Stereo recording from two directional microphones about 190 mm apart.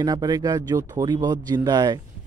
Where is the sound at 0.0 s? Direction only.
20° right (ahead or behind).